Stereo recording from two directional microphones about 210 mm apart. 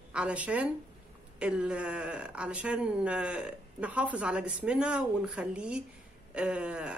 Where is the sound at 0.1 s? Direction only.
5° right (ahead or behind).